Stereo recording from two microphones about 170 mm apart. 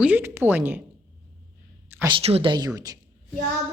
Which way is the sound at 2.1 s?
35° right (ahead or behind).